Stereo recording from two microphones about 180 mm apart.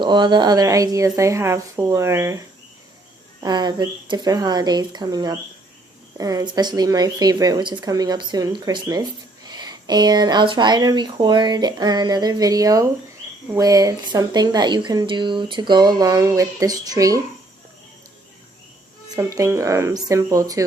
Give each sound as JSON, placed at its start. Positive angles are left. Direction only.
{"t": 0.0, "sound": "a woman's voice", "side_deg": -25}
{"t": 3.4, "sound": "speech", "side_deg": -25}
{"t": 19.1, "sound": "a woman's voice", "side_deg": -15}